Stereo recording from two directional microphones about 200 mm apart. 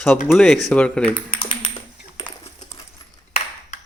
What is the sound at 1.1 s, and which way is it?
Typing, 25° left (ahead or behind).